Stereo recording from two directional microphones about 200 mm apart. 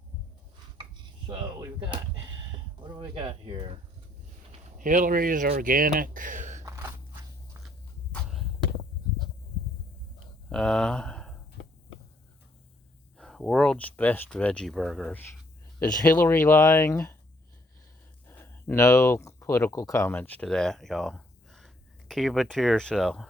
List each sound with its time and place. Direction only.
1.3 s speech: 20° right (ahead or behind)
4.8 s speech: 40° right (ahead or behind)
6.6 s chewing: 15° right (ahead or behind)
8.1 s a sound: centre (ahead or behind)
10.5 s speech: 5° left (ahead or behind)
13.1 s speech: centre (ahead or behind)
18.3 s speech: 10° left (ahead or behind)